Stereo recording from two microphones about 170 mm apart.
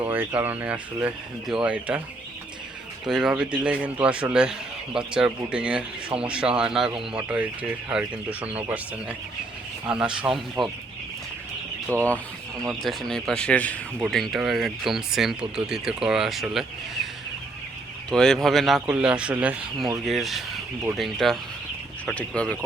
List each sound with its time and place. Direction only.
0.1 s speech: 10° right (ahead or behind)
3.1 s speech: 5° right (ahead or behind)
11.9 s speech: 15° right (ahead or behind)
12.8 s speech: centre (ahead or behind)
18.1 s speech: 5° left (ahead or behind)